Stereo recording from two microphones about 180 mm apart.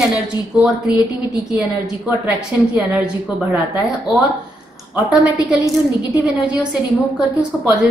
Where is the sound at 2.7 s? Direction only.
5° right (ahead or behind).